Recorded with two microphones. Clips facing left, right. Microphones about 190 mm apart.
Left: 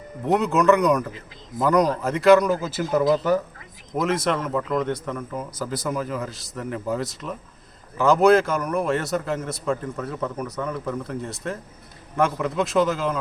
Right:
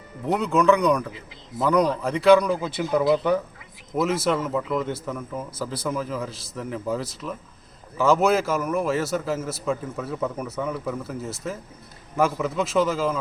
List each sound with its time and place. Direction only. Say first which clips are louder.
0.3 s a man's voice: left 1 dB; centre (ahead or behind)